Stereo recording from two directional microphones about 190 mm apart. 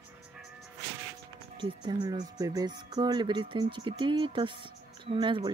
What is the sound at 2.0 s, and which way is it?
Speech, 20° right (ahead or behind).